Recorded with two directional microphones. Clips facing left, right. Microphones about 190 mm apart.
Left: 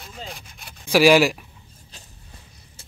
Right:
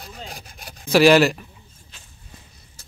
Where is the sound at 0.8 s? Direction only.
10° left (ahead or behind).